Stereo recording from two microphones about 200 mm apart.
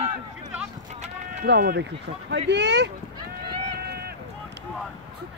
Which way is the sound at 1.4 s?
55° right (ahead or behind).